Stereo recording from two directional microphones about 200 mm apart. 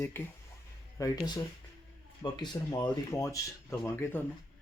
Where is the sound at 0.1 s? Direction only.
10° left (ahead or behind).